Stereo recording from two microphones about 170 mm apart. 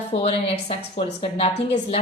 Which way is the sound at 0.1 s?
35° left (ahead or behind).